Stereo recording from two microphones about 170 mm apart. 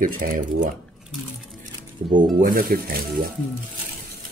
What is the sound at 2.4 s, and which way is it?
Speech, 55° right (ahead or behind).